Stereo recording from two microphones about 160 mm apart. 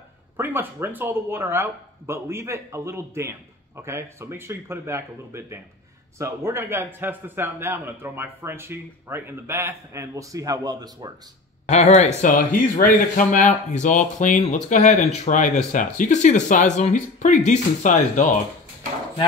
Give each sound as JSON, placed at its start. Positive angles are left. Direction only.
{"t": 0.4, "sound": "speech", "side_deg": -15}
{"t": 11.6, "sound": "speech", "side_deg": 45}